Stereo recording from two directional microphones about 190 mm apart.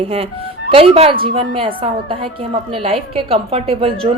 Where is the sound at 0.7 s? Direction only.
30° right (ahead or behind).